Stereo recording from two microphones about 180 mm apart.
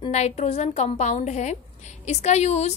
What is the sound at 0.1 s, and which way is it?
A woman's voice, 40° left (ahead or behind).